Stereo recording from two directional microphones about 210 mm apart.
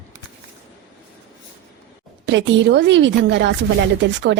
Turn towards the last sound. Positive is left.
turn(degrees=-55)  # may be behind; listen again after turning